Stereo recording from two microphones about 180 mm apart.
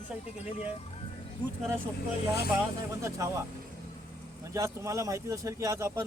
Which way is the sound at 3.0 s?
15° right (ahead or behind).